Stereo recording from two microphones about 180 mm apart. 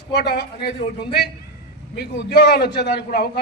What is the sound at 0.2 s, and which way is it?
A man's voice, 65° left (ahead or behind).